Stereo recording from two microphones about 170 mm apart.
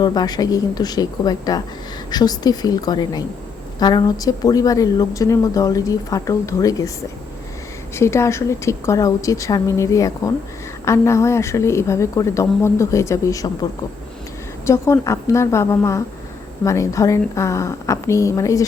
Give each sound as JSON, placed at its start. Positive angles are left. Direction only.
{"t": 0.0, "sound": "a woman's voice", "side_deg": 25}
{"t": 7.9, "sound": "speech", "side_deg": 15}
{"t": 14.7, "sound": "speech", "side_deg": 15}